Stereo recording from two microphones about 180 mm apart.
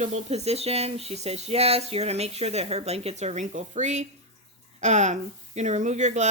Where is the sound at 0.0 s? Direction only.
40° right (ahead or behind).